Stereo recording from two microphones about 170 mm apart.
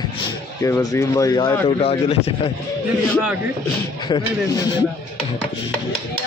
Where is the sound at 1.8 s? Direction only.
35° left (ahead or behind).